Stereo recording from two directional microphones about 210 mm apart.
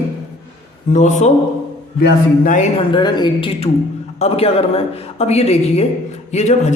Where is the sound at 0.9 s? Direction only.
35° left (ahead or behind).